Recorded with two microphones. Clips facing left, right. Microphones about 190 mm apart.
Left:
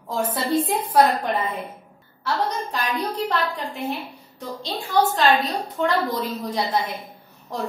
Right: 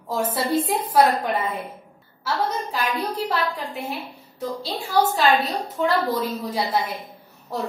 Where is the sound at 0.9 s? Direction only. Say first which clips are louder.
Even; centre (ahead or behind).